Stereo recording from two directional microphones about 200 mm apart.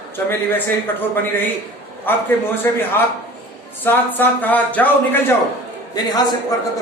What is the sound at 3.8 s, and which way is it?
A man's voice, 10° left (ahead or behind).